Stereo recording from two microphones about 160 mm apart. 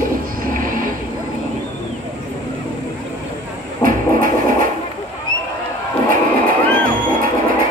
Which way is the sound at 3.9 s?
60° right (ahead or behind).